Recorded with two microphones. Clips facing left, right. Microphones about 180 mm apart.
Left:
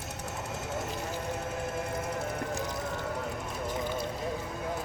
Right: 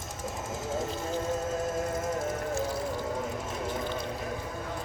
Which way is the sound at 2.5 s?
20° left (ahead or behind).